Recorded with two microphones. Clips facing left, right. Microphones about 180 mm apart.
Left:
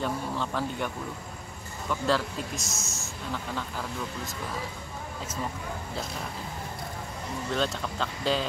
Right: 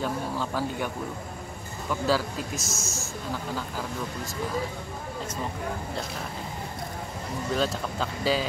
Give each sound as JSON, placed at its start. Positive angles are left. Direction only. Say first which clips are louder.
{"t": 0.0, "sound": "speech", "louder": "right 1 dB", "side_deg": -5}
{"t": 1.9, "sound": "a man's voice", "louder": "right 1 dB", "side_deg": -5}
{"t": 7.5, "sound": "a man's voice", "louder": "right 2 dB", "side_deg": -5}